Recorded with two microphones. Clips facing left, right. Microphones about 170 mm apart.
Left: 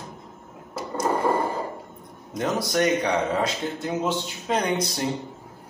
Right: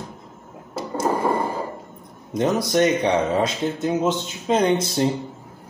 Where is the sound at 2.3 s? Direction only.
20° right (ahead or behind).